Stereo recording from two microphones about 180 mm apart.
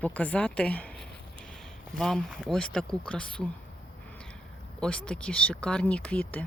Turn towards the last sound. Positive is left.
turn(degrees=5)  # may be behind; listen again after turning